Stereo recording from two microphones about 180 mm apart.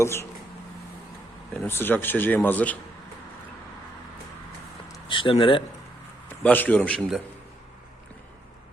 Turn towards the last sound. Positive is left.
turn(degrees=0)  # may be behind; listen again after turning